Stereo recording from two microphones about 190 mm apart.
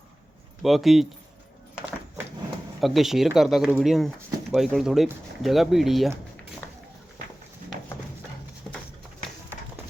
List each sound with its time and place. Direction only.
0.6 s speech: centre (ahead or behind)
2.8 s speech: centre (ahead or behind)
6.6 s run: 10° left (ahead or behind)